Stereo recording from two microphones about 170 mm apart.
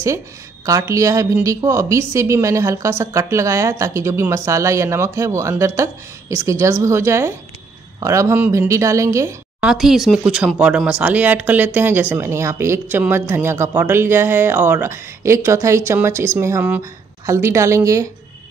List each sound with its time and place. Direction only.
0.7 s speech: 20° right (ahead or behind)
9.6 s speech: 5° right (ahead or behind)